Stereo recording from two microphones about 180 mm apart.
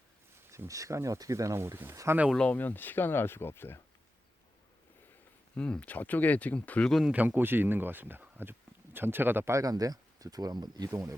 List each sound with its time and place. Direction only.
0.5 s speech: 15° right (ahead or behind)
2.3 s speech: 5° left (ahead or behind)
5.5 s speech: 5° left (ahead or behind); by 11.1 s 20° right (ahead or behind)